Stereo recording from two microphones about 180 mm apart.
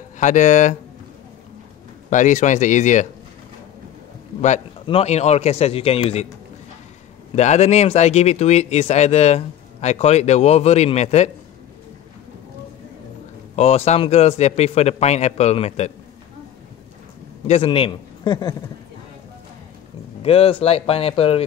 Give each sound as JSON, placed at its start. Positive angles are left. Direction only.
{"t": 0.2, "sound": "a man's voice", "side_deg": 40}
{"t": 2.0, "sound": "a man's voice", "side_deg": 45}
{"t": 4.4, "sound": "speech", "side_deg": 35}
{"t": 7.3, "sound": "speech", "side_deg": 40}
{"t": 13.6, "sound": "speech", "side_deg": 35}
{"t": 17.5, "sound": "a man's voice", "side_deg": 30}
{"t": 20.2, "sound": "speech", "side_deg": 30}